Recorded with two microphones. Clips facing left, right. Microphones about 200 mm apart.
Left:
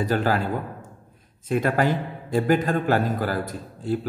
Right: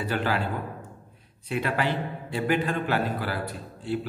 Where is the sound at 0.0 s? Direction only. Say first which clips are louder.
Left 5 dB; 40° left (ahead or behind).